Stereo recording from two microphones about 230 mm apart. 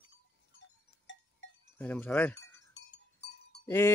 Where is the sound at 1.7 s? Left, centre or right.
Centre.